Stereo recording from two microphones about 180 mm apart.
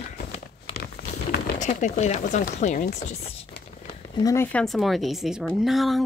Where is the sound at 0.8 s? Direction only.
60° left (ahead or behind).